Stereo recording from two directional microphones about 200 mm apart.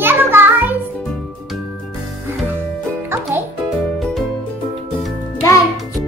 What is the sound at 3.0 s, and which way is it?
Music, 10° right (ahead or behind).